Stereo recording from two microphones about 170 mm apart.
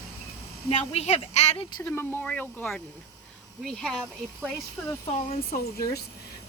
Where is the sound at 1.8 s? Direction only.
10° left (ahead or behind).